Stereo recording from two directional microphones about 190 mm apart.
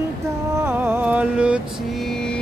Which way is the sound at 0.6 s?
10° right (ahead or behind).